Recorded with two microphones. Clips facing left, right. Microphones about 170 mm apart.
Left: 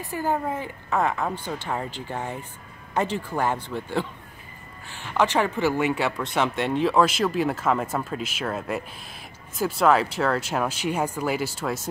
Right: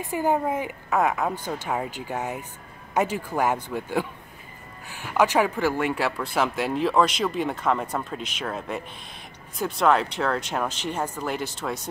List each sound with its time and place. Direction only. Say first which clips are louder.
0.0 s speech: right 3 dB; 20° right (ahead or behind)
0.8 s speech: right 1 dB; 5° right (ahead or behind)
5.1 s speech: right 1 dB; 10° right (ahead or behind)